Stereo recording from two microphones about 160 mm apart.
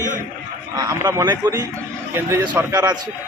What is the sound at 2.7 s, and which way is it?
Speech, 25° right (ahead or behind).